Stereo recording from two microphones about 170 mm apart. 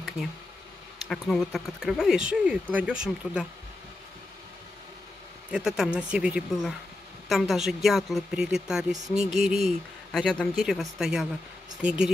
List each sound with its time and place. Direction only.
1.0 s speech: centre (ahead or behind)
5.5 s speech: 5° right (ahead or behind)